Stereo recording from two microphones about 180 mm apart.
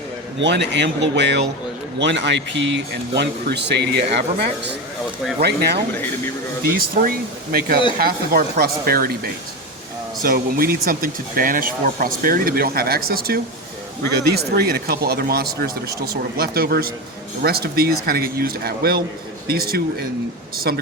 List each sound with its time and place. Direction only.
0.4 s speech: 75° right (ahead or behind)
6.7 s speech: 50° right (ahead or behind)